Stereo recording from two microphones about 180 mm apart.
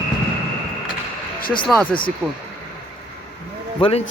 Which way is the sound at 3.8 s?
35° left (ahead or behind).